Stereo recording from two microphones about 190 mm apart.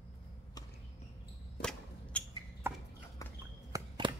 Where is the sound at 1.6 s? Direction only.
5° left (ahead or behind).